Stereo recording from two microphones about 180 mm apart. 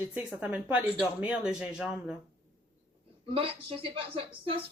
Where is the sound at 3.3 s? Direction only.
30° right (ahead or behind).